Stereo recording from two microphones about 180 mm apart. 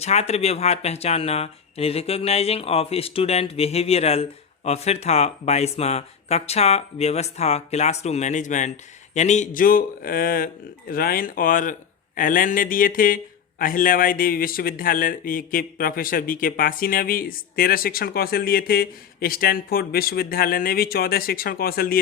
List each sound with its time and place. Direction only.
0.0 s a man's voice: 35° left (ahead or behind); by 21.9 s 55° left (ahead or behind)